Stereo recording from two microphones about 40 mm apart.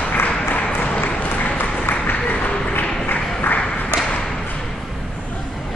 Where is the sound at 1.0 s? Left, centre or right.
Left.